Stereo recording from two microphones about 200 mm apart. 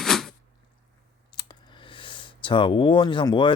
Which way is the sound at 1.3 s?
20° left (ahead or behind).